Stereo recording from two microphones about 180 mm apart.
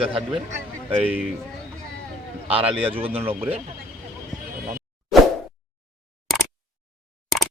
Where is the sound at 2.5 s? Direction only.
30° right (ahead or behind).